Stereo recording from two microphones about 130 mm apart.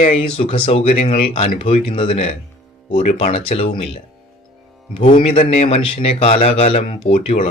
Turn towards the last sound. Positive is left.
turn(degrees=55)  # may be behind; listen again after turning